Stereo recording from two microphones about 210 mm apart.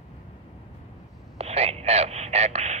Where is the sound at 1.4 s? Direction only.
30° right (ahead or behind).